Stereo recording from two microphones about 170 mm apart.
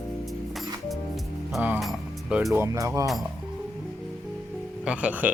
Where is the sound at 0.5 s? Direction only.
Centre (ahead or behind).